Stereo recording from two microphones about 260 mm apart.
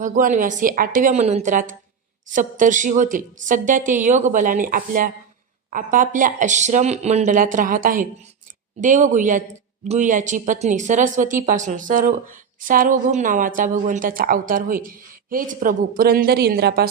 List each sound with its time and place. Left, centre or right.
0.0 s a woman's voice: right